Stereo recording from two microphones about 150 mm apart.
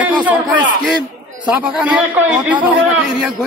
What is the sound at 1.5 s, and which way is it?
A man's voice, 10° right (ahead or behind).